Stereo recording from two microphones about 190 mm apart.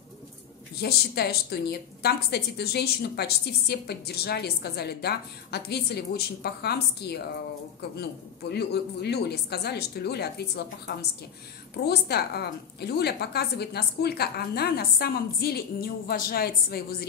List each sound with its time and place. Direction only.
0.7 s a woman's voice: 55° left (ahead or behind)